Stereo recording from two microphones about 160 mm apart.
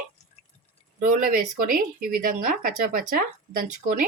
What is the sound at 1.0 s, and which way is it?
Speech, 55° right (ahead or behind).